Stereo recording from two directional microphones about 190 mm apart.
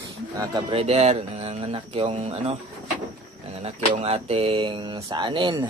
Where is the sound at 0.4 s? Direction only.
30° right (ahead or behind).